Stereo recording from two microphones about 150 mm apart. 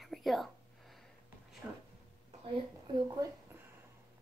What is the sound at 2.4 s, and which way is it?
Speech, 35° right (ahead or behind).